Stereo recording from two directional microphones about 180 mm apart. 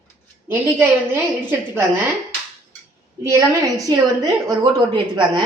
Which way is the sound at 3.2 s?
20° right (ahead or behind).